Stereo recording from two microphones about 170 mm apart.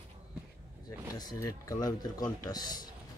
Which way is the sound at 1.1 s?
20° left (ahead or behind).